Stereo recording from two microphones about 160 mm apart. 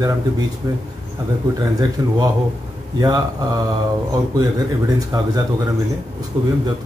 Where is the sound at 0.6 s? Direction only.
20° right (ahead or behind).